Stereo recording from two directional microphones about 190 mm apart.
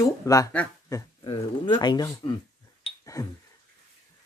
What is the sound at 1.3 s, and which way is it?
Speech, 25° left (ahead or behind).